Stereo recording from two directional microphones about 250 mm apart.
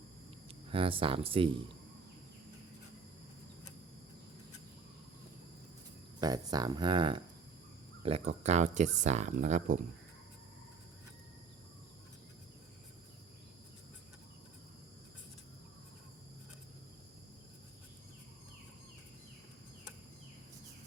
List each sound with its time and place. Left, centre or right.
0.7 s speech: right
6.1 s speech: centre